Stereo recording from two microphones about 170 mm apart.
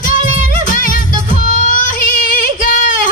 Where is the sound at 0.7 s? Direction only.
55° left (ahead or behind).